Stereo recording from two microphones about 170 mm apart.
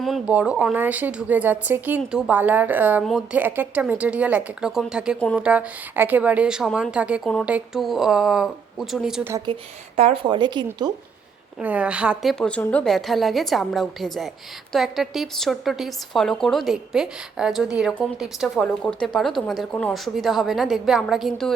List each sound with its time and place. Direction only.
0.0 s a woman's voice: 5° right (ahead or behind)
9.9 s speech: 35° right (ahead or behind)
11.6 s a woman's voice: 10° right (ahead or behind)